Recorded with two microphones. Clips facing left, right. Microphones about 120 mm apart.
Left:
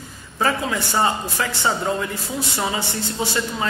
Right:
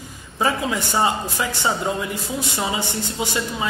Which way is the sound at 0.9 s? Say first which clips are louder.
Even; 15° right (ahead or behind).